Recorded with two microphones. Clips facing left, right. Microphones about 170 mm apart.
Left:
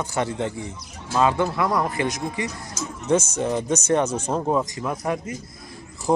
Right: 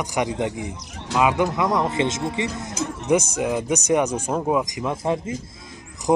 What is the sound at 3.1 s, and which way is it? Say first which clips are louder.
Speech: right 1 dB; 15° right (ahead or behind).